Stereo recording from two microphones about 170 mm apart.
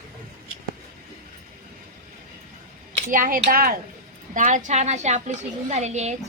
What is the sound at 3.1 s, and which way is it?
Speech, 55° right (ahead or behind).